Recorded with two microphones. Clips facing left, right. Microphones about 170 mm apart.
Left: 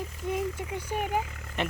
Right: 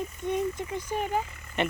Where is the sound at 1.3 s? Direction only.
80° left.